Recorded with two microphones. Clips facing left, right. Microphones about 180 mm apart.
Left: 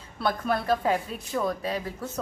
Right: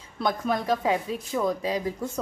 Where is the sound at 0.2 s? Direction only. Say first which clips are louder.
Right 1 dB; 15° right (ahead or behind).